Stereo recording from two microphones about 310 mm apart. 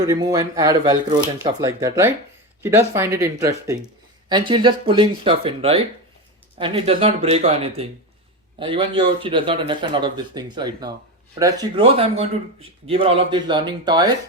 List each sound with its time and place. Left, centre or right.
0.0 s speech: centre